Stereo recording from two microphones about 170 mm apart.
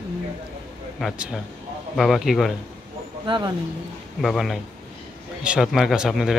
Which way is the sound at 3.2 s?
25° right (ahead or behind).